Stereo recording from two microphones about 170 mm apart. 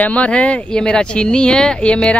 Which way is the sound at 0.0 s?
5° left (ahead or behind).